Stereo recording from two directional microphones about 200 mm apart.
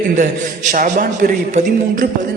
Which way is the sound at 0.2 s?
40° right (ahead or behind).